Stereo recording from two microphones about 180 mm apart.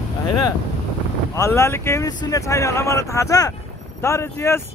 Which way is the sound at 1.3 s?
15° left (ahead or behind).